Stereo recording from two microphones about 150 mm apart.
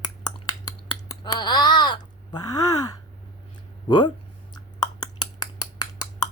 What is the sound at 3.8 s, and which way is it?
Speech, 30° left (ahead or behind).